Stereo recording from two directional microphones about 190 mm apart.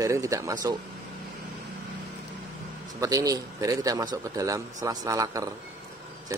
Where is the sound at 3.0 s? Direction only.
20° right (ahead or behind).